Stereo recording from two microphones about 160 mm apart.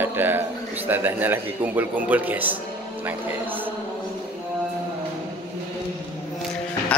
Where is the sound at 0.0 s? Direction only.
15° right (ahead or behind).